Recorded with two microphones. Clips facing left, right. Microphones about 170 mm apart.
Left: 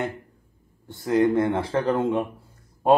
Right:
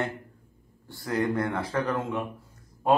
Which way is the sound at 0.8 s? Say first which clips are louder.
Left 7 dB; 20° left (ahead or behind).